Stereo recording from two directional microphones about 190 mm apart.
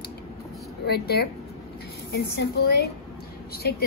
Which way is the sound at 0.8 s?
55° left (ahead or behind).